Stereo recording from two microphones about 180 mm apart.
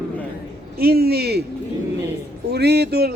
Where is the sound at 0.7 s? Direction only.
60° right (ahead or behind).